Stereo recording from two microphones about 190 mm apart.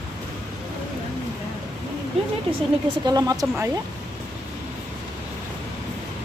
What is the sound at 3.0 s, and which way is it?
Speech, 20° right (ahead or behind).